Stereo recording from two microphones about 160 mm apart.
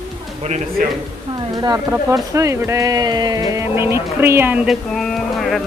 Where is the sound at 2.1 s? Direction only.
20° right (ahead or behind); by 5.6 s centre (ahead or behind).